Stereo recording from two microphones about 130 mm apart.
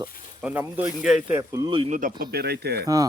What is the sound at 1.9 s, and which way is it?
Speech, 90° right.